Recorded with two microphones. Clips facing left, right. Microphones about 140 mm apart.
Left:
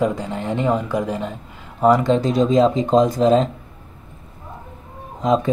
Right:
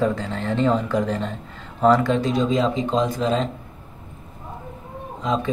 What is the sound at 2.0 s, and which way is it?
Speech, 35° left (ahead or behind).